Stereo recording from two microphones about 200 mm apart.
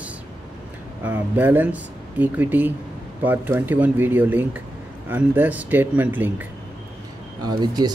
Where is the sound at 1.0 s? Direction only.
10° right (ahead or behind).